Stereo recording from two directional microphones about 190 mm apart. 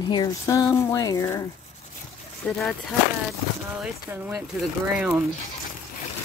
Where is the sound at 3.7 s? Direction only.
10° right (ahead or behind).